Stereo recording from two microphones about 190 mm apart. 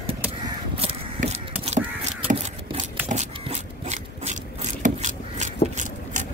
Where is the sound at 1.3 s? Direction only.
35° right (ahead or behind).